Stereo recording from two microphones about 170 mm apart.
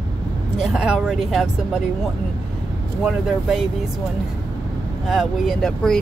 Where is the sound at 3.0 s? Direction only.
5° right (ahead or behind).